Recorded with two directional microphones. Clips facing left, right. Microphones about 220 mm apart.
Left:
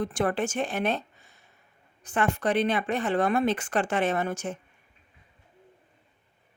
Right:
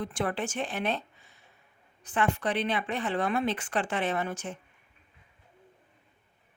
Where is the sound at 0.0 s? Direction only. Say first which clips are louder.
Left 5 dB; 45° left (ahead or behind).